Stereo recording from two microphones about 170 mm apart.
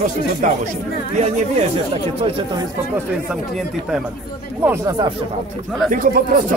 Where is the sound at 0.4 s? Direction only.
50° right (ahead or behind).